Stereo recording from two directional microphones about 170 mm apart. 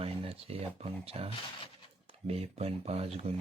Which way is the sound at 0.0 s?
35° right (ahead or behind).